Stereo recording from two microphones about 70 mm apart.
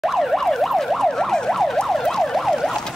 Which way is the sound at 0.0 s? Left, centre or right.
Centre.